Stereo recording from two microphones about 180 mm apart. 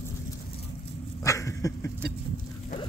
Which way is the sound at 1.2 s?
15° left (ahead or behind).